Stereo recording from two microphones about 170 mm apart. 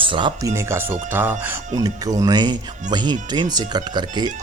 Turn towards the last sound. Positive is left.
turn(degrees=-25)  # may be behind; listen again after turning